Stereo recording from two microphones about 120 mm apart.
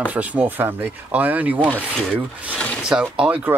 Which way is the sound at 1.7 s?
10° left (ahead or behind).